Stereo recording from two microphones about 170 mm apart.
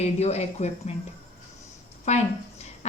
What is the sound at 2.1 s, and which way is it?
Speech, 40° left (ahead or behind).